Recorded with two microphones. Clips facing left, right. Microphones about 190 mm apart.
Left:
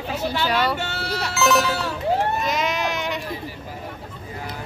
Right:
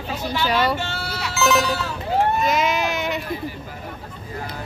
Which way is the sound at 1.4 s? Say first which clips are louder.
Right 1 dB; centre (ahead or behind).